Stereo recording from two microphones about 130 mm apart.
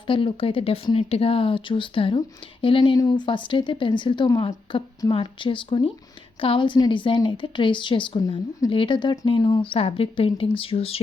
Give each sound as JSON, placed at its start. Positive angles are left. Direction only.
{"t": 0.1, "sound": "a woman's voice", "side_deg": 45}